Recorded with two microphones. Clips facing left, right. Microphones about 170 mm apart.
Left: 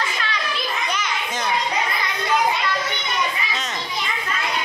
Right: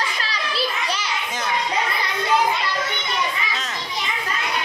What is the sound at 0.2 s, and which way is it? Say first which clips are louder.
Children playing: right 1 dB; 35° right (ahead or behind).